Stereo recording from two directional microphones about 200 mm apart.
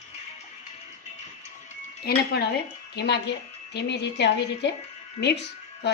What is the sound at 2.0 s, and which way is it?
Cutlery, 55° left (ahead or behind).